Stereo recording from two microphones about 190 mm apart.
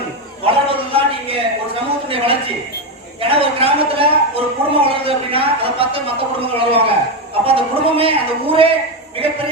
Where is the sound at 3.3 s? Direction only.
30° right (ahead or behind).